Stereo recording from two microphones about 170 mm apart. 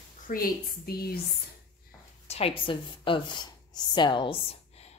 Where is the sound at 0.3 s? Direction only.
60° left (ahead or behind).